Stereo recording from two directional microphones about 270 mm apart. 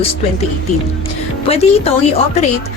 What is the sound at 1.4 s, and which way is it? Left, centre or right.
Speech, left.